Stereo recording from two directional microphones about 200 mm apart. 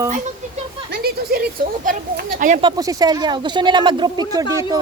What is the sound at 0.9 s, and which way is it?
Speech, 50° right (ahead or behind).